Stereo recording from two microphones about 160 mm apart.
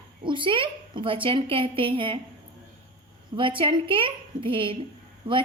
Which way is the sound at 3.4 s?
30° right (ahead or behind).